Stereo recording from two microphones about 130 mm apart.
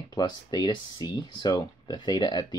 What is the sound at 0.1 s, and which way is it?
Speech, 30° left (ahead or behind).